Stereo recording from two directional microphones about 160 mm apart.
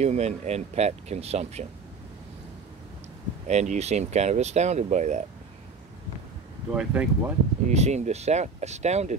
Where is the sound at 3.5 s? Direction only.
45° right (ahead or behind).